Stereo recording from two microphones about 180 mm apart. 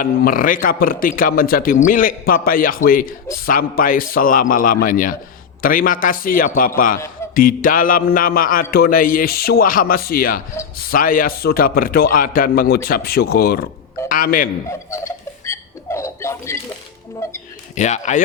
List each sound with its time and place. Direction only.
0.0 s a man's voice: 50° left (ahead or behind)
14.7 s chuckle: 15° left (ahead or behind)
17.2 s speech: 15° left (ahead or behind)
17.7 s a man's voice: 40° left (ahead or behind)